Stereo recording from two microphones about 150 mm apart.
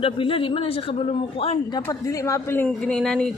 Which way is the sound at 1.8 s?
20° left (ahead or behind).